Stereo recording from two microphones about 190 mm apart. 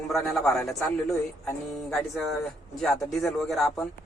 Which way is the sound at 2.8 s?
Centre (ahead or behind).